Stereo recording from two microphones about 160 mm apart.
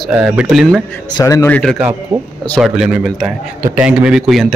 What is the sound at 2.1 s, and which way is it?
Speech, 40° right (ahead or behind).